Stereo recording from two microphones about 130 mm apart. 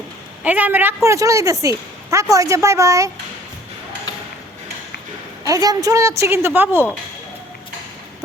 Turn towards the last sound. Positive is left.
turn(degrees=-15)  # may be behind; listen again after turning